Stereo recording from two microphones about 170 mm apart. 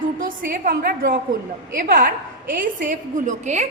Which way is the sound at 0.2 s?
55° right (ahead or behind).